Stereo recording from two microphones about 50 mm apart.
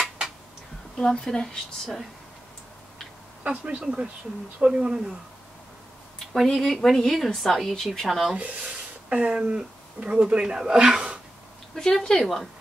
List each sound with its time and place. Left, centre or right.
0.9 s a woman's voice: centre
3.4 s speech: right
6.1 s speech: centre
8.4 s speech: right
11.7 s a woman's voice: centre